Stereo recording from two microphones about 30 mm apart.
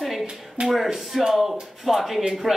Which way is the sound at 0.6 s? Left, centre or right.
Right.